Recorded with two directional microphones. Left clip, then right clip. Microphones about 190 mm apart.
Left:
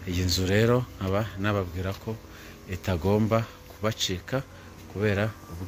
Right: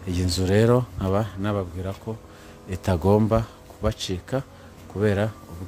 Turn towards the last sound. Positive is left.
turn(degrees=-25)  # may be behind; listen again after turning